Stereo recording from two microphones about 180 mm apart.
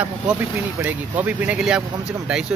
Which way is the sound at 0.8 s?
10° right (ahead or behind).